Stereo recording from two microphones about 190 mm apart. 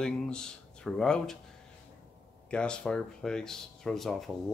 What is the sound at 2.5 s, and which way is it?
Speech, 5° left (ahead or behind).